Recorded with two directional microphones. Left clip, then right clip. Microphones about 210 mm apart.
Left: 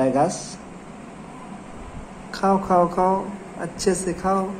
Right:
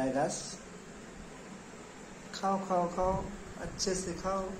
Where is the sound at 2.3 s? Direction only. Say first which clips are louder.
Left 13 dB; 40° left (ahead or behind).